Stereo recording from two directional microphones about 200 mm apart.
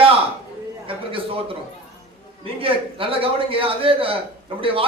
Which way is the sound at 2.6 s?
25° right (ahead or behind).